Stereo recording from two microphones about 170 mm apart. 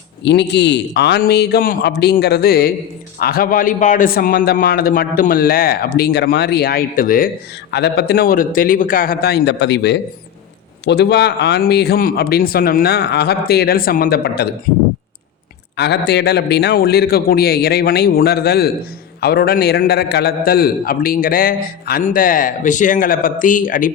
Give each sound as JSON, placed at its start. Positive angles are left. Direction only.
{"t": 0.3, "sound": "a man's voice", "side_deg": 90}
{"t": 7.7, "sound": "speech", "side_deg": 80}
{"t": 15.8, "sound": "a man's voice", "side_deg": 85}